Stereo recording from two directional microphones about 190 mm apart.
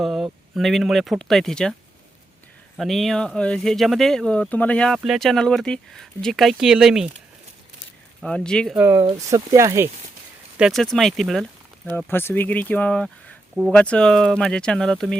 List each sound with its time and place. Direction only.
0.0 s speech: centre (ahead or behind)
2.7 s speech: centre (ahead or behind)
8.2 s speech: 5° left (ahead or behind)
8.8 s speech: 15° right (ahead or behind)
10.6 s speech: centre (ahead or behind)